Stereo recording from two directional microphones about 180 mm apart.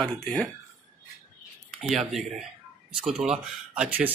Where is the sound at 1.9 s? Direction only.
Centre (ahead or behind).